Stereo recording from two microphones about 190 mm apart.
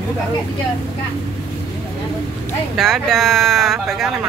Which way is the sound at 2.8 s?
Centre (ahead or behind).